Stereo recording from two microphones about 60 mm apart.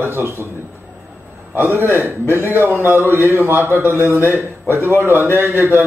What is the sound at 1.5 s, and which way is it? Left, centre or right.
A man's voice, right.